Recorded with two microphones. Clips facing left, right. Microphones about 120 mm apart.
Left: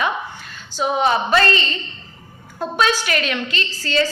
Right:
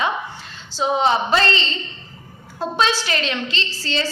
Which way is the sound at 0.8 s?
25° right (ahead or behind).